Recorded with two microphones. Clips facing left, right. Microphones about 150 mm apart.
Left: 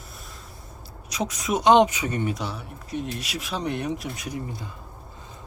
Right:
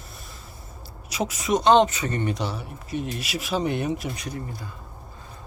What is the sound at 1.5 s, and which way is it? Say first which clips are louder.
Speech: even; 15° left (ahead or behind).